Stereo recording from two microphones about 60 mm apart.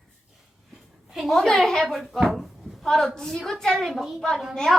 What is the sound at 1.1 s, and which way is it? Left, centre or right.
A child's voice, centre.